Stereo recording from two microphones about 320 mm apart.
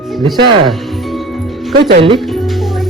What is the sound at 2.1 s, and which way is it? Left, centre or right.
Music, centre.